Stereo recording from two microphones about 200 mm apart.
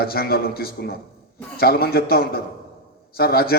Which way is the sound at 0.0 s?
50° left (ahead or behind).